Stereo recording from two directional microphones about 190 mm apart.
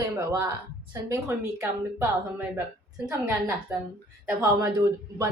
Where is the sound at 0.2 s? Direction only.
15° right (ahead or behind).